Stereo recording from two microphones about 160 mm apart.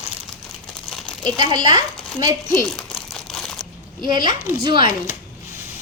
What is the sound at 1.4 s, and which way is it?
Speech, 30° right (ahead or behind).